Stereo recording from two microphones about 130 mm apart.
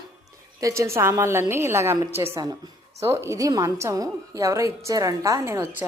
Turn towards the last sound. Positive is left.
turn(degrees=-20)  # may be behind; listen again after turning